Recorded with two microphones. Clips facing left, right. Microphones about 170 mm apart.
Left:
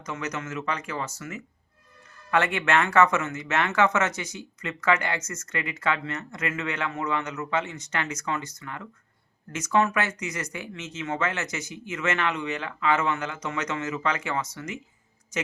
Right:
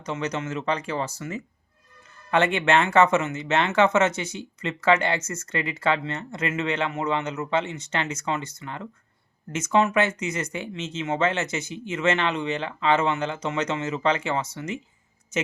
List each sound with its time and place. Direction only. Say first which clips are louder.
0.0 s speech: right 4 dB; 30° right (ahead or behind)